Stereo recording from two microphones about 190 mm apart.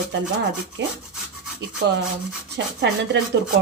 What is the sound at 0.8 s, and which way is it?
Speech, 70° right (ahead or behind).